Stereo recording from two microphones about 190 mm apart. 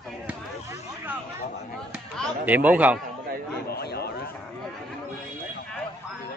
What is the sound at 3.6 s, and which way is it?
Speech, 55° left (ahead or behind).